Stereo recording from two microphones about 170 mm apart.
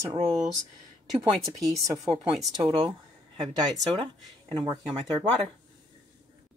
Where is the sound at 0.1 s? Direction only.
20° right (ahead or behind).